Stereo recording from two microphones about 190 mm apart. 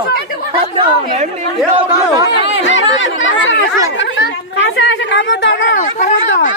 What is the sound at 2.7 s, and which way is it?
Speech, 85° left.